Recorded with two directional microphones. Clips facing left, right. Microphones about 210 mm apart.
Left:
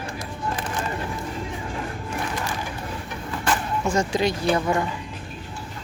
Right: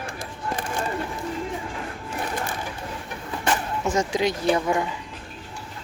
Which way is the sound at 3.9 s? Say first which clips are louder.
Even; 15° right (ahead or behind).